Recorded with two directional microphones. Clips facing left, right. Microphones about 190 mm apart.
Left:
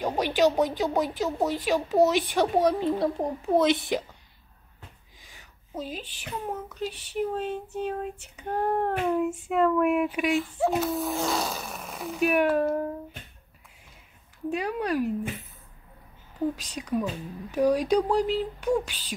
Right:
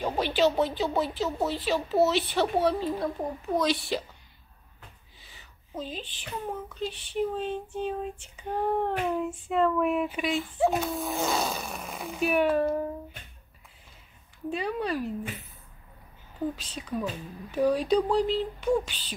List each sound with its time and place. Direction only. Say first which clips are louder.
0.0 s child singing: left 2 dB; 10° left (ahead or behind)
2.9 s speech: left 4 dB; 25° left (ahead or behind)
5.2 s a sound: left 1 dB; 10° left (ahead or behind)
6.7 s child singing: left 1 dB; 10° left (ahead or behind)
10.4 s speech: even; centre (ahead or behind)
14.5 s child singing: left 2 dB; 10° left (ahead or behind)
16.5 s child singing: left 4 dB; 10° left (ahead or behind)